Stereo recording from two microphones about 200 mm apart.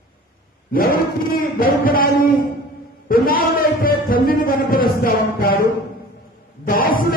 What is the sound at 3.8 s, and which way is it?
Music, 45° left (ahead or behind).